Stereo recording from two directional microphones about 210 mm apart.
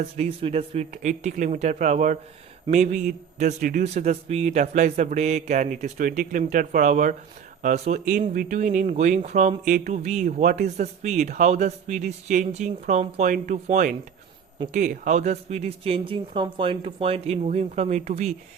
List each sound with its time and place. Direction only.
0.2 s speech: 30° right (ahead or behind)